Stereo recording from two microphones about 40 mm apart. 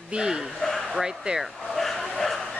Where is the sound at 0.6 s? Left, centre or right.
Centre.